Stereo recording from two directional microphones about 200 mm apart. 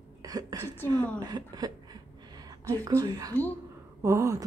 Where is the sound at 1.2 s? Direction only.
20° right (ahead or behind).